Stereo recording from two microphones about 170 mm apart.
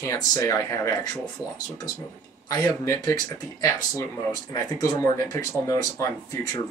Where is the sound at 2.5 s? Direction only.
20° left (ahead or behind).